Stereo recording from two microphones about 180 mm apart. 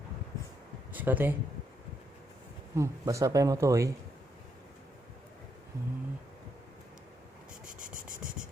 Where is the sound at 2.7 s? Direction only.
15° right (ahead or behind).